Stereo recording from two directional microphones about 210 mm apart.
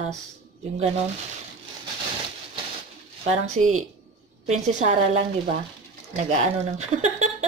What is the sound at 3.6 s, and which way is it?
Speech, 30° right (ahead or behind).